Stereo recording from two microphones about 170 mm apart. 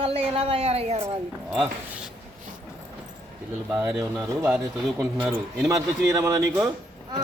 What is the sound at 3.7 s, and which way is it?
Speech, 10° right (ahead or behind).